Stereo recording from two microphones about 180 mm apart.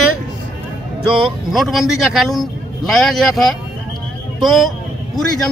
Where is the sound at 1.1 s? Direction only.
Centre (ahead or behind).